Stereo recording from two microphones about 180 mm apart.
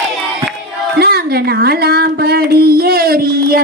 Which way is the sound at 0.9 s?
60° right (ahead or behind).